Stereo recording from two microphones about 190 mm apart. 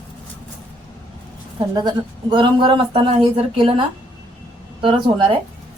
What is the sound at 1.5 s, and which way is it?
Speech, 20° right (ahead or behind).